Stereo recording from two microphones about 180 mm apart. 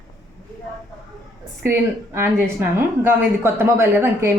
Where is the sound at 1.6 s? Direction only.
15° right (ahead or behind).